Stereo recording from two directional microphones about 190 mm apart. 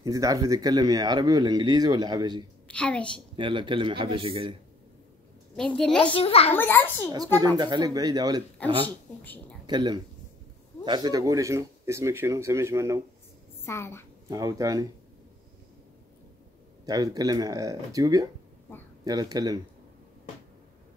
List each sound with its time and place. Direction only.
0.0 s speech: 20° right (ahead or behind)
2.7 s a woman's voice: 5° left (ahead or behind)
3.3 s speech: 25° right (ahead or behind)
5.6 s a woman's voice: centre (ahead or behind)
6.1 s a child's voice: 30° left (ahead or behind)
6.5 s a woman's voice: 10° left (ahead or behind)
7.3 s speech: 20° right (ahead or behind)
8.8 s a woman's voice: 10° left (ahead or behind)
9.7 s speech: 25° right (ahead or behind)
13.7 s a woman's voice: 15° left (ahead or behind)
14.3 s speech: 20° right (ahead or behind)
16.8 s speech: 20° right (ahead or behind)